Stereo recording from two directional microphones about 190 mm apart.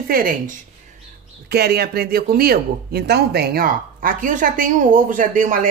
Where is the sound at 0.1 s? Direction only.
50° right (ahead or behind).